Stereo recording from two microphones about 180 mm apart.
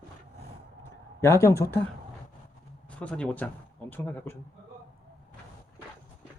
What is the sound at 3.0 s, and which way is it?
Speech, 5° left (ahead or behind).